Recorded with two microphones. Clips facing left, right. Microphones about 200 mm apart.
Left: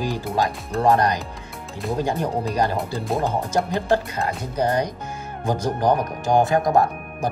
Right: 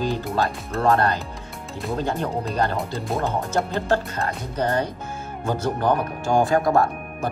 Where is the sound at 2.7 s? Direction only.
Centre (ahead or behind).